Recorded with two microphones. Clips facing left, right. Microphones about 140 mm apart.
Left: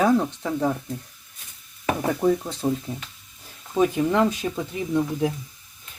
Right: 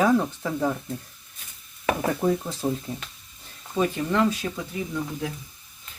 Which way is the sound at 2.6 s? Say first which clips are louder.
Left 3 dB; 10° left (ahead or behind).